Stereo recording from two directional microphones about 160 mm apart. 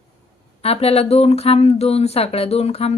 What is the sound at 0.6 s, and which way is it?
Speech, 40° left (ahead or behind).